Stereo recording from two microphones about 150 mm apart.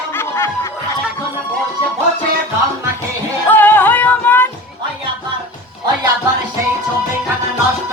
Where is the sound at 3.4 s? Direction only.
10° left (ahead or behind).